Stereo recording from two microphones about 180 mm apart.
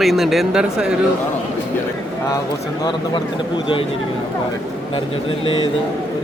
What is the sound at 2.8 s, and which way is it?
Speech, 25° left (ahead or behind).